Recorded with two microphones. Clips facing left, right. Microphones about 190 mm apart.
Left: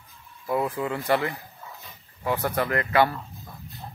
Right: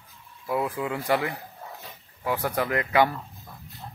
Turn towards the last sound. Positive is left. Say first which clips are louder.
# even
turn(degrees=-10)  # may be behind; listen again after turning